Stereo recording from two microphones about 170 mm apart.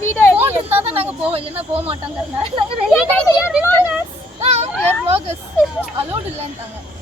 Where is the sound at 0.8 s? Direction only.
35° right (ahead or behind).